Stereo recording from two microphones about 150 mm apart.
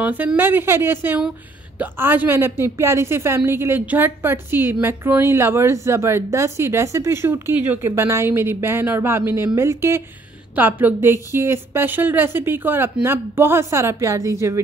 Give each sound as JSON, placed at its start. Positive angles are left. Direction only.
{"t": 0.0, "sound": "a woman's voice", "side_deg": -10}